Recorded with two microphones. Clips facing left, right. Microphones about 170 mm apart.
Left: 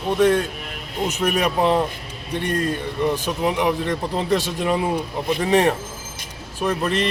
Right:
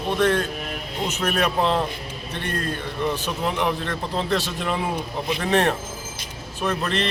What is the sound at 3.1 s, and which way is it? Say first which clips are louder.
Speech: left 4 dB; 10° left (ahead or behind).